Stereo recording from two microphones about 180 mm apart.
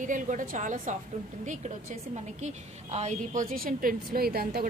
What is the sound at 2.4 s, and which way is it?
A woman's voice, 40° right (ahead or behind).